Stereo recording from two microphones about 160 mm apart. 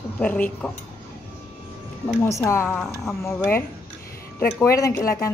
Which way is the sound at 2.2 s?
20° left (ahead or behind).